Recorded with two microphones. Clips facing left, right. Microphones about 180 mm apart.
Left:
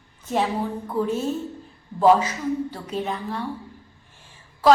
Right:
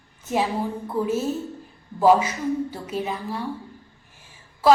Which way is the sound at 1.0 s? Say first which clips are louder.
Even; 5° right (ahead or behind).